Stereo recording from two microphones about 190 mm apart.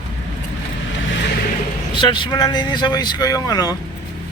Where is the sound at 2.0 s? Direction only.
25° left (ahead or behind).